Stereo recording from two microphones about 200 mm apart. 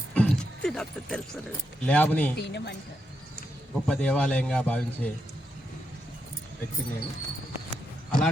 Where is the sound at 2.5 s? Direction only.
60° left (ahead or behind).